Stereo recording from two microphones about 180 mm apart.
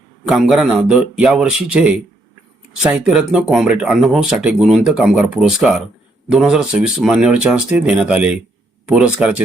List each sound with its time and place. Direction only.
0.3 s speech: 5° right (ahead or behind)